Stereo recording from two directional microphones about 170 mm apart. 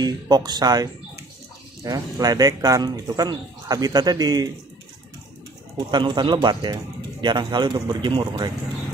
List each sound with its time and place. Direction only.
0.0 s speech: 25° right (ahead or behind)
5.9 s speech: 25° right (ahead or behind)